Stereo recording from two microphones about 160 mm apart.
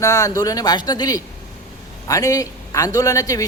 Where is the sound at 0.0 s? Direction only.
20° left (ahead or behind).